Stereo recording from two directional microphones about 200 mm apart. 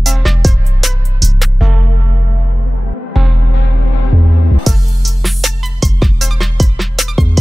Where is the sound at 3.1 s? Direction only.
Centre (ahead or behind).